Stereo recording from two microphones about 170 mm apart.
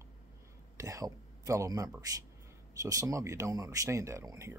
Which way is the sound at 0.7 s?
20° right (ahead or behind).